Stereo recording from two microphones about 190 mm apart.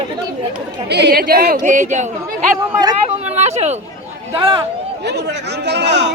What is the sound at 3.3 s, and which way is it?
Speech, 35° right (ahead or behind).